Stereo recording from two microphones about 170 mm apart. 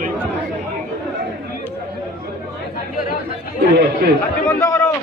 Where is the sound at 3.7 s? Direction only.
70° right (ahead or behind).